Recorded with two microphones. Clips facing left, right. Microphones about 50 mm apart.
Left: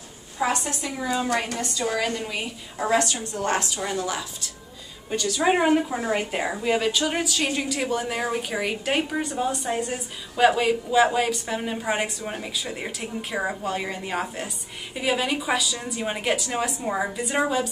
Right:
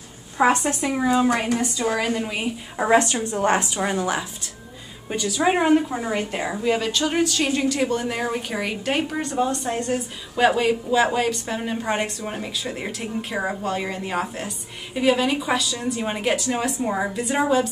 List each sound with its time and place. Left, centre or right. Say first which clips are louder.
0.4 s a woman's voice: right 6 dB; right
1.1 s a woman's voice: right 3 dB; centre
2.8 s a woman's voice: right 4 dB; right
5.1 s a woman's voice: right 1 dB; centre